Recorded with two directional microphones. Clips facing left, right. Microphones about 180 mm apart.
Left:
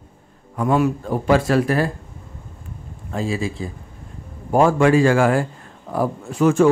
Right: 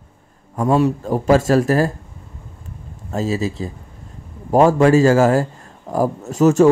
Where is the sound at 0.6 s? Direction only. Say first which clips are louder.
Right 2 dB; 30° right (ahead or behind).